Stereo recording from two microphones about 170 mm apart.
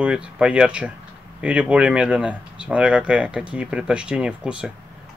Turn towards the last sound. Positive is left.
turn(degrees=-5)  # may be behind; listen again after turning